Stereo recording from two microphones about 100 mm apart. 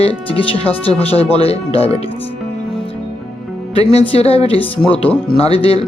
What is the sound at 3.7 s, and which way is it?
Speech, 90° left.